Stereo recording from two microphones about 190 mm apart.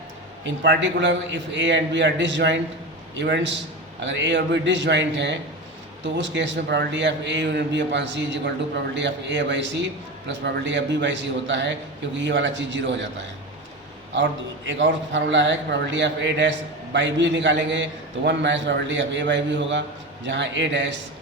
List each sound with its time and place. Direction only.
0.4 s a man's voice: 70° right (ahead or behind)
14.1 s a man's voice: 75° right (ahead or behind)